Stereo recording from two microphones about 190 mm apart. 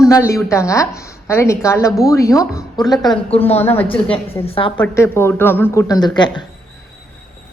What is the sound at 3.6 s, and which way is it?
Speech, 10° left (ahead or behind).